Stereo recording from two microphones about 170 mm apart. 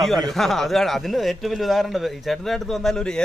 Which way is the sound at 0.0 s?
Centre (ahead or behind).